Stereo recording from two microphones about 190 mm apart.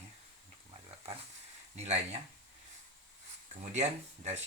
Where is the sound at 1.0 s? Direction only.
30° right (ahead or behind).